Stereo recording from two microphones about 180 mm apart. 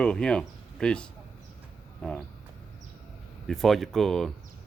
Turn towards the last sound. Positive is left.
turn(degrees=0)  # may be behind; listen again after turning